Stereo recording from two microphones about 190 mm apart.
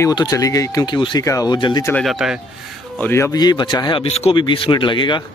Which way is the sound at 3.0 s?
15° left (ahead or behind).